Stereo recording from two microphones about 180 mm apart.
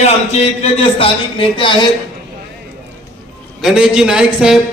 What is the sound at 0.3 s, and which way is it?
Speech, 35° left (ahead or behind).